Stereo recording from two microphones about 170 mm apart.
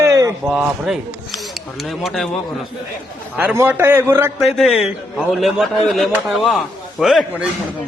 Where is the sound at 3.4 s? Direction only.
10° right (ahead or behind).